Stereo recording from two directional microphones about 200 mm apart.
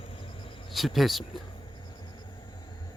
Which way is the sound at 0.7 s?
Centre (ahead or behind).